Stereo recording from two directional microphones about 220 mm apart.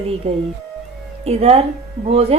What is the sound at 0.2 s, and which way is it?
A woman's voice, 25° right (ahead or behind).